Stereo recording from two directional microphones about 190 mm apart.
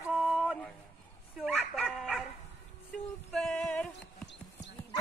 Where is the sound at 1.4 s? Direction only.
Centre (ahead or behind).